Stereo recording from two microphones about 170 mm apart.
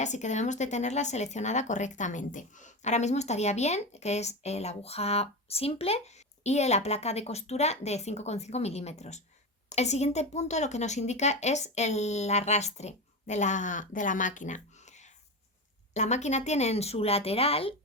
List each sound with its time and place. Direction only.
0.0 s speech: 45° left (ahead or behind)